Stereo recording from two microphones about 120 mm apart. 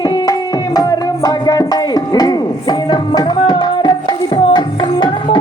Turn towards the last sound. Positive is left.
turn(degrees=40)  # may be behind; listen again after turning